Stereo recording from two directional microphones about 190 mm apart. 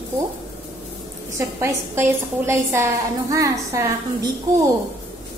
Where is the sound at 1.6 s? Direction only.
15° right (ahead or behind).